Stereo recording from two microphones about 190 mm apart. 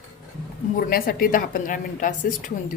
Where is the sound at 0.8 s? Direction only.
50° left (ahead or behind).